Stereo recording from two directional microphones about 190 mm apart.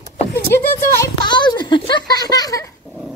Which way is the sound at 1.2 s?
25° left (ahead or behind).